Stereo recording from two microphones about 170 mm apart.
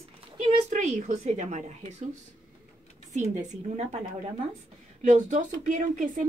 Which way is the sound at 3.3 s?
45° right (ahead or behind).